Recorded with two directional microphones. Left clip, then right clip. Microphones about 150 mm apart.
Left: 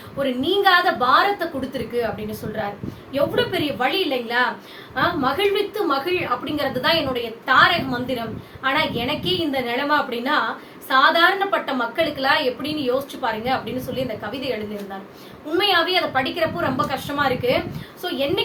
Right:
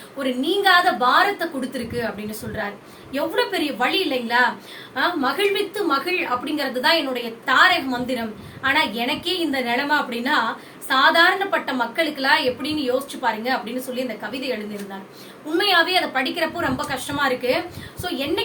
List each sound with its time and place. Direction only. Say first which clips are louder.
0.2 s a woman's voice: left 1 dB; centre (ahead or behind)
3.1 s a woman's voice: left 1 dB; 5° right (ahead or behind)
15.5 s a woman's voice: right 1 dB; 5° right (ahead or behind)